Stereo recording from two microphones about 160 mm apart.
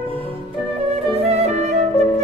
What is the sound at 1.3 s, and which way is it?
Music, 40° right (ahead or behind).